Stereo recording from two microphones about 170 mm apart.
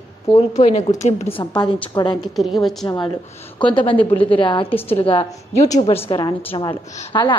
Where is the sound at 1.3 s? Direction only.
25° left (ahead or behind).